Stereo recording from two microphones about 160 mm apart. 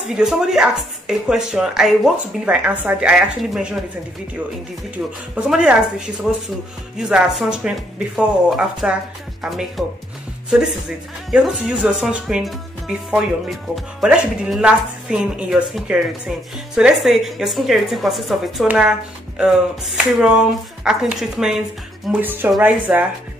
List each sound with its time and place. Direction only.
0.1 s speech: 5° right (ahead or behind)
4.9 s speech: 10° right (ahead or behind)
11.2 s speech: centre (ahead or behind)